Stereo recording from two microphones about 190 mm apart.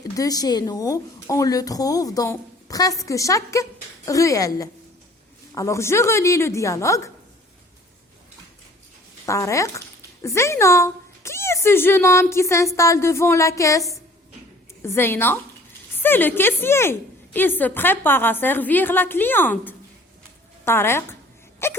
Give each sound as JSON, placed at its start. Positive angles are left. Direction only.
{"t": 0.2, "sound": "a woman's voice", "side_deg": 20}
{"t": 9.2, "sound": "a woman's voice", "side_deg": 15}
{"t": 21.6, "sound": "wail", "side_deg": 10}